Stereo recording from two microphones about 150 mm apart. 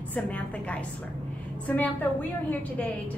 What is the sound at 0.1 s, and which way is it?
Speech, 10° left (ahead or behind).